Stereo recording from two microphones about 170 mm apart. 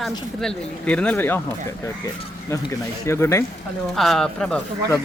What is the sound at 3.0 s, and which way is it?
Speech, 15° left (ahead or behind).